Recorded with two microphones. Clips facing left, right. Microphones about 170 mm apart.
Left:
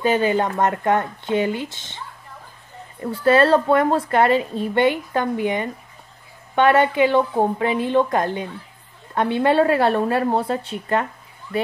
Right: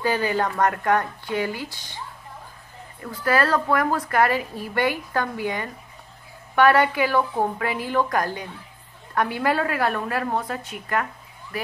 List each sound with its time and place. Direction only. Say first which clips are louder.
0.0 s a woman's voice: left 4 dB; 20° left (ahead or behind)
3.0 s a woman's voice: left 6 dB; 30° left (ahead or behind)